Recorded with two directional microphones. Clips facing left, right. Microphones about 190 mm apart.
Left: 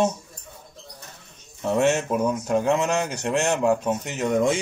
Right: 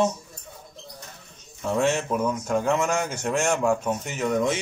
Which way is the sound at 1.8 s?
20° left (ahead or behind).